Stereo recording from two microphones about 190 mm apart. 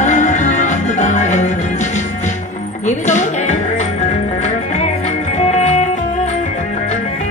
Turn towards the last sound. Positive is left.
turn(degrees=35)  # may be behind; listen again after turning